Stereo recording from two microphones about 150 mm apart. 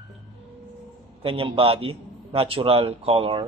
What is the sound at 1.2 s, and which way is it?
A man's voice, 35° right (ahead or behind).